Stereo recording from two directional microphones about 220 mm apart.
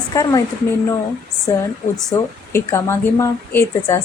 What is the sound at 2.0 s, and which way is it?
A woman's voice, 10° left (ahead or behind).